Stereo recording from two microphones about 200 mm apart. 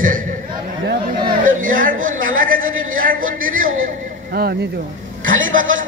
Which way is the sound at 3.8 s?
50° right (ahead or behind).